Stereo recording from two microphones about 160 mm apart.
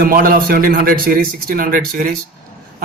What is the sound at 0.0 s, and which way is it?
A man's voice, 65° right (ahead or behind).